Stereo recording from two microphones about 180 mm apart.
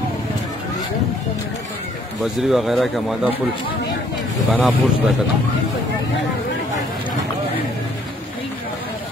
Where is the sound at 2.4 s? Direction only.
Centre (ahead or behind).